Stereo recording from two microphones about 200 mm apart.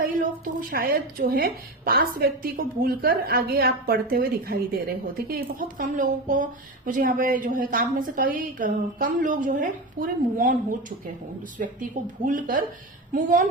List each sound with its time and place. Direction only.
0.7 s a woman's voice: 45° right (ahead or behind)